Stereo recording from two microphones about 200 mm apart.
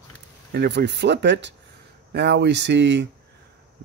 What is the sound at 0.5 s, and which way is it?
Speech, 55° right (ahead or behind).